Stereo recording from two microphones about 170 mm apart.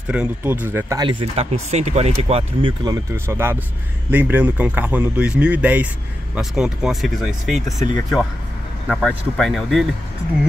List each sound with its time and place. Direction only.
0.1 s a man's voice: 10° right (ahead or behind)
1.0 s speech: 35° right (ahead or behind)
2.8 s a man's voice: 20° right (ahead or behind); by 7.7 s centre (ahead or behind)
8.8 s speech: centre (ahead or behind)